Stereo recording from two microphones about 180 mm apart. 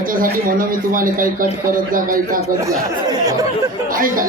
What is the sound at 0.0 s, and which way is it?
Speech, 50° right (ahead or behind).